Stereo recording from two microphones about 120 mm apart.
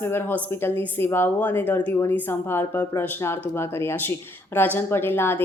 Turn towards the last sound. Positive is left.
turn(degrees=15)  # may be behind; listen again after turning